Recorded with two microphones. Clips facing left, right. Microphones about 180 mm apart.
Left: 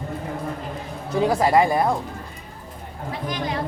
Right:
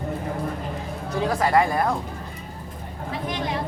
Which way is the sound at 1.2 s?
20° left (ahead or behind).